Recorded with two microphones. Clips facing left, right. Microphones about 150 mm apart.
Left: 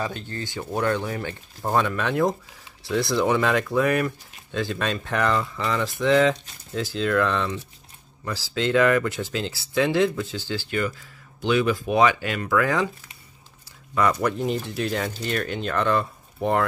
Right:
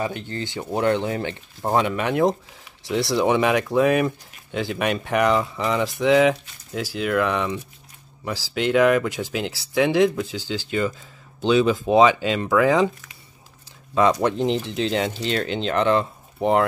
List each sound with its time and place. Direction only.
0.0 s speech: 15° right (ahead or behind)
14.2 s speech: 20° right (ahead or behind)